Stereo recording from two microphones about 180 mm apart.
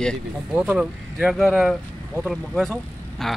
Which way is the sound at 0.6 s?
5° right (ahead or behind).